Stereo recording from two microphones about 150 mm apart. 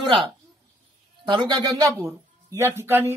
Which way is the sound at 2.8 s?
15° right (ahead or behind).